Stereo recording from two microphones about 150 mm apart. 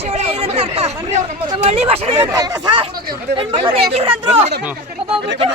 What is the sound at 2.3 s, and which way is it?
Speech, 25° right (ahead or behind).